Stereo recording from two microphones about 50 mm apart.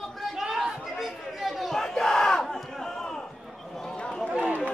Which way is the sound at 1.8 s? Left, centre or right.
Centre.